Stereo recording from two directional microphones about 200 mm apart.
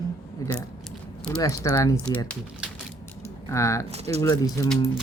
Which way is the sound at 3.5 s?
15° left (ahead or behind).